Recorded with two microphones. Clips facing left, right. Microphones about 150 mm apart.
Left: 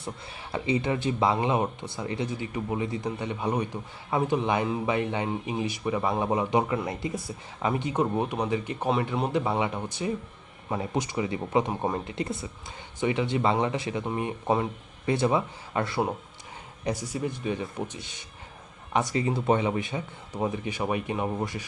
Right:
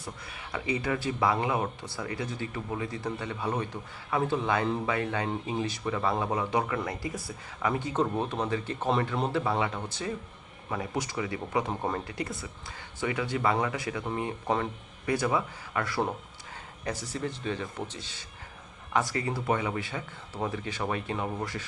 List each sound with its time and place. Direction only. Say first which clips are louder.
0.0 s speech: left 4 dB; 25° left (ahead or behind)
16.8 s speech: left 4 dB; 15° left (ahead or behind)